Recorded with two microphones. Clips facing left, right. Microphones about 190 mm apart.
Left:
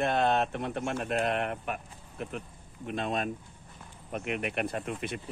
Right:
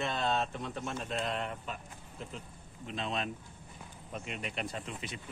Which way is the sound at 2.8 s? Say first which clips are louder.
Left 5 dB; 50° left (ahead or behind).